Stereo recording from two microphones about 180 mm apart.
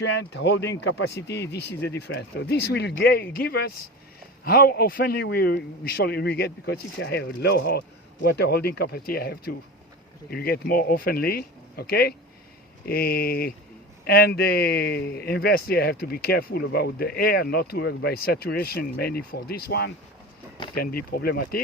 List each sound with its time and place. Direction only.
0.0 s speech: 80° left; by 21.6 s 60° left (ahead or behind)